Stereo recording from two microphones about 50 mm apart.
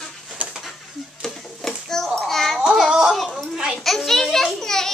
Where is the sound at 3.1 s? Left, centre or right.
Centre.